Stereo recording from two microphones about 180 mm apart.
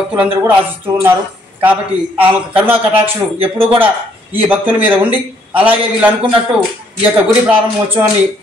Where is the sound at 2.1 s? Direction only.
10° right (ahead or behind).